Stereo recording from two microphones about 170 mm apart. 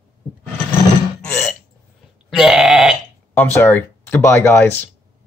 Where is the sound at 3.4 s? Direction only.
10° left (ahead or behind).